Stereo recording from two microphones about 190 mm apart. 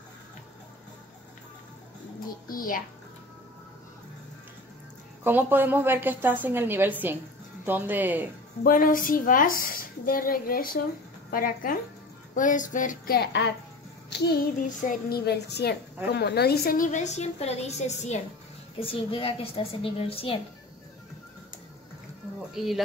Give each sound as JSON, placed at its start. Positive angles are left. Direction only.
{"t": 2.4, "sound": "a woman's voice", "side_deg": 50}
{"t": 5.2, "sound": "a woman's voice", "side_deg": -10}
{"t": 8.6, "sound": "a woman's voice", "side_deg": 45}
{"t": 22.5, "sound": "speech", "side_deg": 0}